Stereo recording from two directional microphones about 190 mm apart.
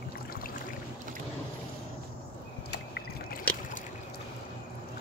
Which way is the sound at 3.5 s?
5° left (ahead or behind).